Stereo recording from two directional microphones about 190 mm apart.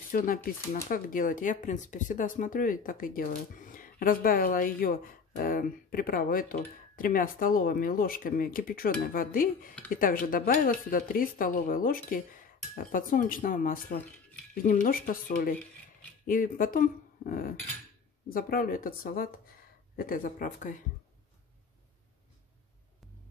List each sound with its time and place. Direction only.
0.1 s speech: 50° left (ahead or behind)